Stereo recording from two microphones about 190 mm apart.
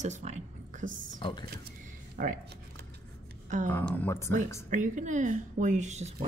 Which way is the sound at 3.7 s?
10° left (ahead or behind).